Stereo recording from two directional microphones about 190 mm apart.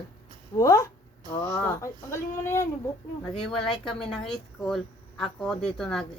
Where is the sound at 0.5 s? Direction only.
15° left (ahead or behind).